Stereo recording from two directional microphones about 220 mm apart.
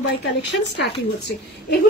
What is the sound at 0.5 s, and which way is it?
Speech, 50° left (ahead or behind).